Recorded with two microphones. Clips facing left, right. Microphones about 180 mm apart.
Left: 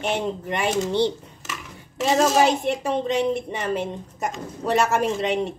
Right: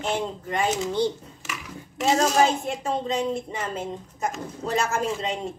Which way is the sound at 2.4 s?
75° left (ahead or behind).